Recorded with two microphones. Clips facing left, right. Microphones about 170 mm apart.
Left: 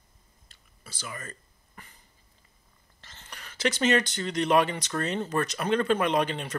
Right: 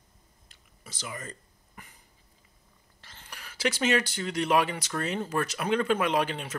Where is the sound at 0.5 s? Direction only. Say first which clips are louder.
Right 1 dB; 20° right (ahead or behind).